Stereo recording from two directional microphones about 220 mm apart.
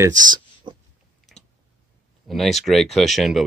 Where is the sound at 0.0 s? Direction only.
20° right (ahead or behind).